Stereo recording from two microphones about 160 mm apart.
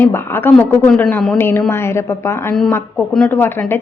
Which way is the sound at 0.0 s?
15° left (ahead or behind).